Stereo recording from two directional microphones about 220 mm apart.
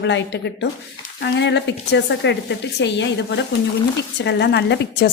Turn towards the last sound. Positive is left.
turn(degrees=50)  # may be behind; listen again after turning